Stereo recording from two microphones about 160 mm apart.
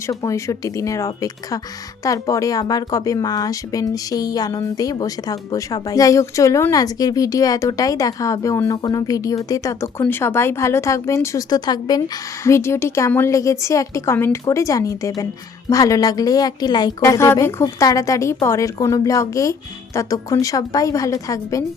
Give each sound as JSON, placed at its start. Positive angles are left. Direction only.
{"t": 0.1, "sound": "a woman's voice", "side_deg": 20}